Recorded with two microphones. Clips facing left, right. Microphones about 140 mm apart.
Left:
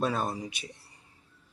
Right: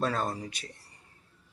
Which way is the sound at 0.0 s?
10° left (ahead or behind).